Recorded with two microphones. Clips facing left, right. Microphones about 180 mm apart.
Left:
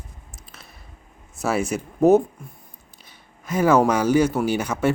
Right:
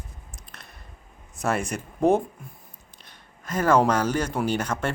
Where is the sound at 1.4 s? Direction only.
5° left (ahead or behind).